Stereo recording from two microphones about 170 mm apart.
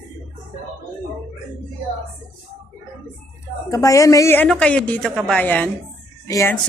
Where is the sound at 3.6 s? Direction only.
20° left (ahead or behind).